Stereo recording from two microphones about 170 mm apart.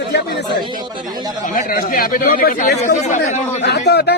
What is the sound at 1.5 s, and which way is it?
Speech, 60° left (ahead or behind).